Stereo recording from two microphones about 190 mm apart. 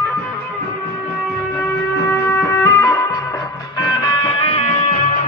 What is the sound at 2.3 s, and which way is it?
Music, 10° left (ahead or behind).